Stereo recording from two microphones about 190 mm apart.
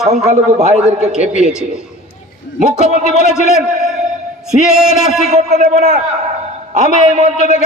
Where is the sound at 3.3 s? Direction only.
5° right (ahead or behind).